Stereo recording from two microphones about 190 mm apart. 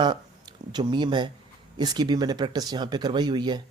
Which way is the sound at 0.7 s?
25° right (ahead or behind).